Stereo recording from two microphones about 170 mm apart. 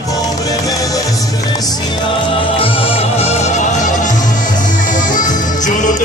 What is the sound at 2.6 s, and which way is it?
Music, 35° left (ahead or behind).